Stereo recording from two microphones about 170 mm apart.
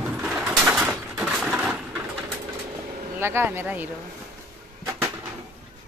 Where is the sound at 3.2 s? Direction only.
15° right (ahead or behind).